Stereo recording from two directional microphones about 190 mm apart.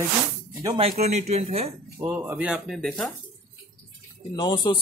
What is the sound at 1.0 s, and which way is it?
Speech, 35° right (ahead or behind).